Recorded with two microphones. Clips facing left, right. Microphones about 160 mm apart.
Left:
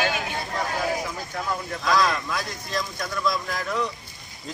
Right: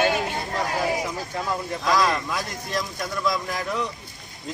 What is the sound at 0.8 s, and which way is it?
Speech, 20° right (ahead or behind).